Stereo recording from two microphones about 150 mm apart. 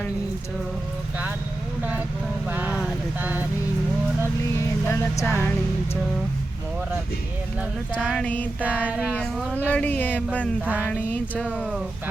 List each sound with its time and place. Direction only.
2.5 s a sound: 10° right (ahead or behind)
4.9 s speech: 15° left (ahead or behind)
8.2 s speech: 10° left (ahead or behind)
8.6 s child singing: 10° right (ahead or behind)
9.6 s speech: 10° left (ahead or behind)
10.7 s child singing: 10° right (ahead or behind)
10.9 s speech: 10° left (ahead or behind)
11.4 s child singing: 5° right (ahead or behind)